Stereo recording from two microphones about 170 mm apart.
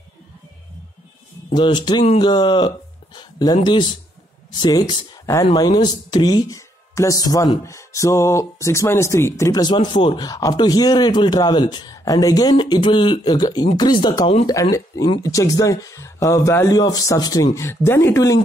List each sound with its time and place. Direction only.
1.5 s speech: 25° left (ahead or behind)
5.4 s speech: 30° left (ahead or behind)